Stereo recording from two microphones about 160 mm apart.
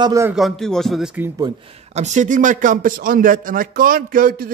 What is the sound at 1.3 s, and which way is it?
A man's voice, 30° right (ahead or behind).